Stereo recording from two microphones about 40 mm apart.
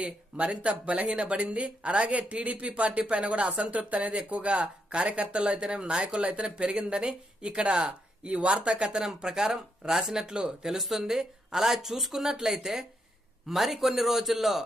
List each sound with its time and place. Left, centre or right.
0.0 s speech: right
9.0 s speech: centre
10.8 s a man's voice: centre